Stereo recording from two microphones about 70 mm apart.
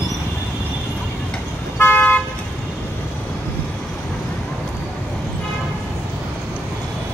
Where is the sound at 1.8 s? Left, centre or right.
Left.